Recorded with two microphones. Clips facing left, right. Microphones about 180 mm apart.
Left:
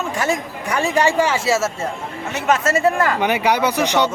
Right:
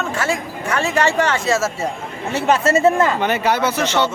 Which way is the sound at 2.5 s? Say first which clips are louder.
Right 2 dB; 30° right (ahead or behind).